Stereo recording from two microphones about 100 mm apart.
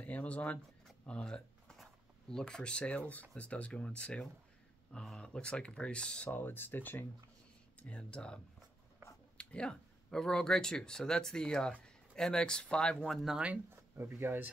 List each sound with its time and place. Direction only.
0.0 s speech: 15° left (ahead or behind)
9.4 s speech: 10° left (ahead or behind)
13.9 s speech: 25° right (ahead or behind)